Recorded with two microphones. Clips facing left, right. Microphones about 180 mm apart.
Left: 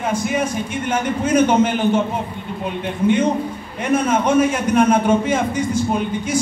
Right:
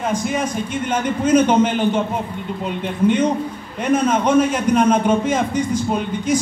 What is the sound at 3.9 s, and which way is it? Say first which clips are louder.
A man's voice: right 1 dB; 10° left (ahead or behind).